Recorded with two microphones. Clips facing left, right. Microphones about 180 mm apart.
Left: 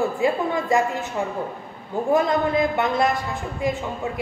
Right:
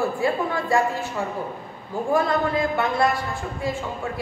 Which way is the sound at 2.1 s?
20° left (ahead or behind).